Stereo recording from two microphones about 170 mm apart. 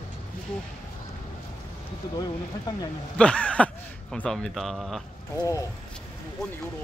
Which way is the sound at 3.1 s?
5° left (ahead or behind).